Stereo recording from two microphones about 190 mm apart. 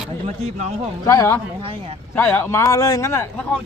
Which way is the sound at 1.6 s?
30° right (ahead or behind).